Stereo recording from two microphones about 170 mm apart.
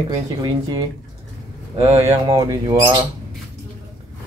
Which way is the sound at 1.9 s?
15° right (ahead or behind).